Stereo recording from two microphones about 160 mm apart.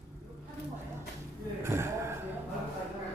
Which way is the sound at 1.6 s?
15° right (ahead or behind).